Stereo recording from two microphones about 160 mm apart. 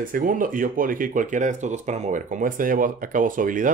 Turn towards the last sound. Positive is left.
turn(degrees=-55)  # may be behind; listen again after turning